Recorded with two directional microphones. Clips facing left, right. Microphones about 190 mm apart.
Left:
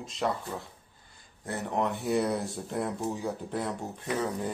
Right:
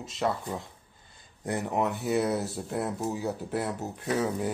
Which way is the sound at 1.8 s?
5° right (ahead or behind).